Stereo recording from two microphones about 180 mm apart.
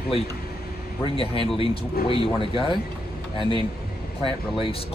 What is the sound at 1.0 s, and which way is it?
Speech, 30° left (ahead or behind).